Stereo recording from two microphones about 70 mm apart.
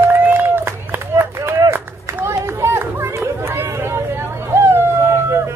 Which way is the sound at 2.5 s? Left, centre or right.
Right.